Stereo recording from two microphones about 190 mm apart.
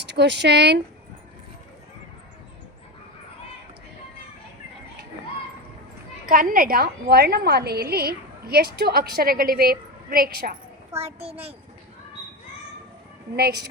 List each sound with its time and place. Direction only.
0.0 s speech: 65° right (ahead or behind)
6.2 s a woman's voice: 50° right (ahead or behind)
10.9 s a child's voice: 30° right (ahead or behind)
13.3 s a woman's voice: 55° right (ahead or behind)